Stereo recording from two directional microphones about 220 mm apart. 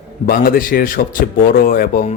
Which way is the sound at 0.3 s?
40° left (ahead or behind).